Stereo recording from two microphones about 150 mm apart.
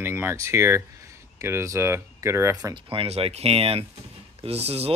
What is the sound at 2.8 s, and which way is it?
Speech, 40° right (ahead or behind).